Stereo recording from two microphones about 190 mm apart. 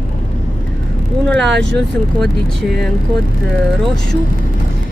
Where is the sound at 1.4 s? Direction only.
65° right (ahead or behind).